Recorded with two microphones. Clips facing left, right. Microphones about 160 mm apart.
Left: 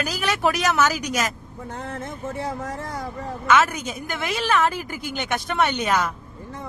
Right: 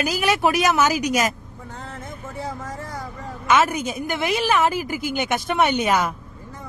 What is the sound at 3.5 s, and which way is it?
A woman's voice, 10° right (ahead or behind).